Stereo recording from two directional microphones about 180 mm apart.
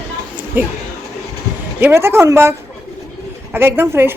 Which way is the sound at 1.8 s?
15° right (ahead or behind).